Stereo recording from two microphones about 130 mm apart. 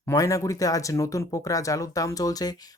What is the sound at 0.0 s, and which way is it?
Speech, 25° left (ahead or behind).